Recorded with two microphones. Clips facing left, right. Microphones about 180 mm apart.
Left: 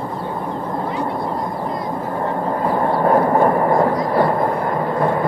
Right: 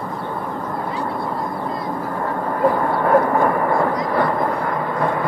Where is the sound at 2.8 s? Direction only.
30° left (ahead or behind).